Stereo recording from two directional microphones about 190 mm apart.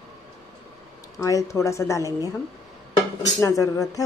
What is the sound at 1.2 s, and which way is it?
Speech, 15° left (ahead or behind).